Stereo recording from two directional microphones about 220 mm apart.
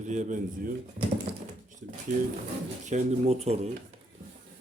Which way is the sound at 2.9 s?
30° right (ahead or behind).